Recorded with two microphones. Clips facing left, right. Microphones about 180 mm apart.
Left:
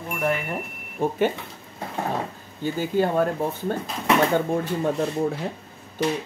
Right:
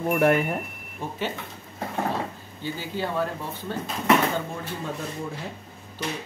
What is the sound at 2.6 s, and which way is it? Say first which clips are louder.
Speech: left 8 dB; 50° left (ahead or behind).